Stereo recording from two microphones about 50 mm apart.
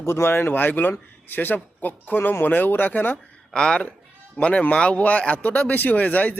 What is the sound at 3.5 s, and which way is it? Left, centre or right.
Speech, centre.